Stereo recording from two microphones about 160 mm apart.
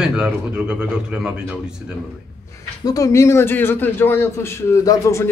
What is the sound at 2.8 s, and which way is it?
A man's voice, 20° left (ahead or behind).